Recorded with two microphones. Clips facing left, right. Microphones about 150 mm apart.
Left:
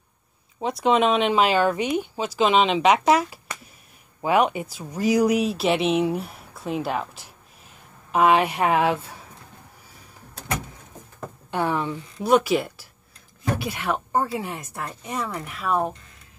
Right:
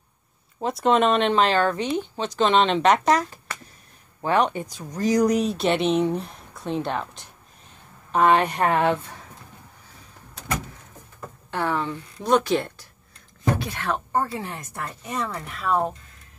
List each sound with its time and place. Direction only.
0.6 s a woman's voice: centre (ahead or behind)
11.5 s a woman's voice: 15° left (ahead or behind)